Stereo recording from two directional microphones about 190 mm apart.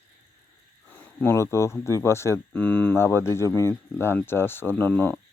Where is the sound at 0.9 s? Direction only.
10° left (ahead or behind).